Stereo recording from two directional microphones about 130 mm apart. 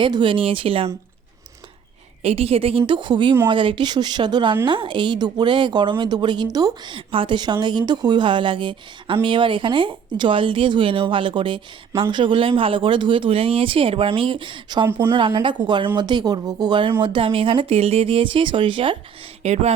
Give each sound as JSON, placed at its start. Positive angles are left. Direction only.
{"t": 0.0, "sound": "speech", "side_deg": -40}
{"t": 2.2, "sound": "speech", "side_deg": -50}
{"t": 14.8, "sound": "speech", "side_deg": -15}
{"t": 15.1, "sound": "speech", "side_deg": -40}
{"t": 19.4, "sound": "speech", "side_deg": -55}